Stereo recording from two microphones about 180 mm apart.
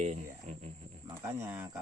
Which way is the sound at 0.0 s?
40° right (ahead or behind).